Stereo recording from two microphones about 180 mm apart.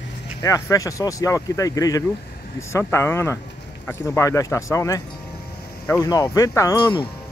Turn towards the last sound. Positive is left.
turn(degrees=20)  # may be behind; listen again after turning